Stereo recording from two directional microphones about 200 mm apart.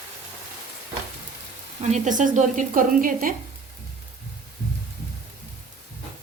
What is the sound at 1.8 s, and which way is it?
A woman's voice, 35° right (ahead or behind).